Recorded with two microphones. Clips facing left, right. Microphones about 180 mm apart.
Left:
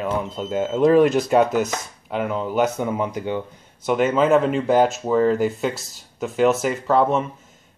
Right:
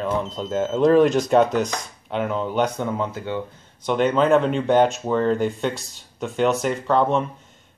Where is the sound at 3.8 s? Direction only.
5° left (ahead or behind).